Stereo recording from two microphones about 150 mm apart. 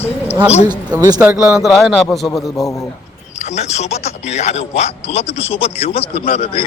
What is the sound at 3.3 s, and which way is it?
A man's voice, 50° left (ahead or behind).